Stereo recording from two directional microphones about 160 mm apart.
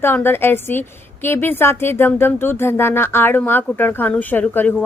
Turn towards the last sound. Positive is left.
turn(degrees=10)  # may be behind; listen again after turning